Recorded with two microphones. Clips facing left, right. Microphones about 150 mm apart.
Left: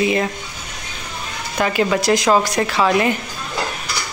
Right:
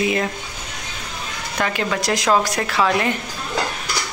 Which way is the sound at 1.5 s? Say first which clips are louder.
Left 5 dB; 5° left (ahead or behind).